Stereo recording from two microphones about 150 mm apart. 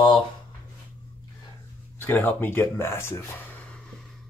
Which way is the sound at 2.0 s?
10° left (ahead or behind).